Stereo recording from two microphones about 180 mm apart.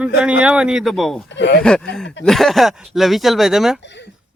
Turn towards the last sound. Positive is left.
turn(degrees=0)  # may be behind; listen again after turning